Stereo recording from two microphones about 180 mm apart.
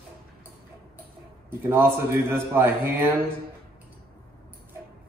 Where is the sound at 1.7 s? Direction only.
15° right (ahead or behind).